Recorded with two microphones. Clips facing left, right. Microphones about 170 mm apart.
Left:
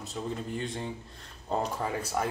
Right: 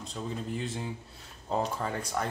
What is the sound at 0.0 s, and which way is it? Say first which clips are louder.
Speech: left 1 dB; centre (ahead or behind).